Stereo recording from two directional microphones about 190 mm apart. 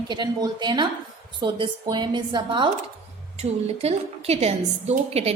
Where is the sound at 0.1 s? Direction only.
25° right (ahead or behind).